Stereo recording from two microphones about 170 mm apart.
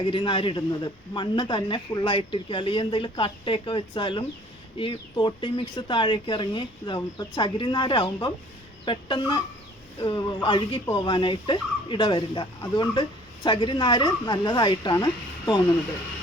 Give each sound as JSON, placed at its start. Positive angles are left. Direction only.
{"t": 0.0, "sound": "speech", "side_deg": 30}